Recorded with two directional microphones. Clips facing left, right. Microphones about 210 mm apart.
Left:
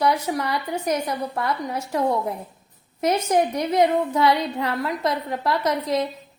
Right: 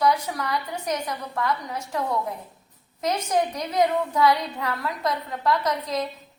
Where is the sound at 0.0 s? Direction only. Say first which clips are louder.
Left 2 dB; 25° left (ahead or behind).